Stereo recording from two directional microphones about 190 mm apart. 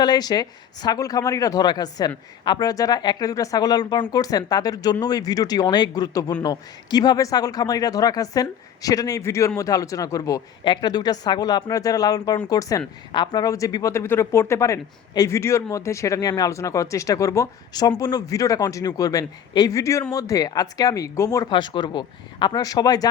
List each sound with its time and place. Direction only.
0.0 s speech: 20° left (ahead or behind)